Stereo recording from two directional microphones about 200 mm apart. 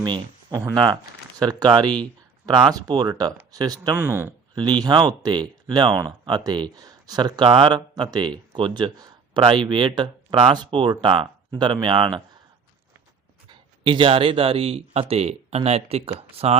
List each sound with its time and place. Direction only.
0.0 s speech: 20° right (ahead or behind)
13.5 s speech: 25° right (ahead or behind)